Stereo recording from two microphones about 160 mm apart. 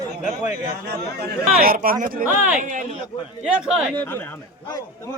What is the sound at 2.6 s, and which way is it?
Speech, 50° right (ahead or behind).